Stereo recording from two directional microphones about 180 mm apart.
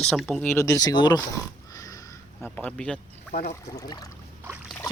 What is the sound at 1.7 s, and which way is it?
Sniff, 20° left (ahead or behind).